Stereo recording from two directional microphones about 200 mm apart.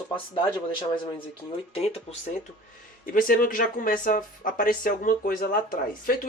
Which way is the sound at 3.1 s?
45° left (ahead or behind).